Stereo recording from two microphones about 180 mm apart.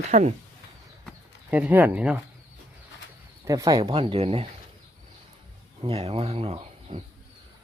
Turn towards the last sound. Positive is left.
turn(degrees=-35)  # may be behind; listen again after turning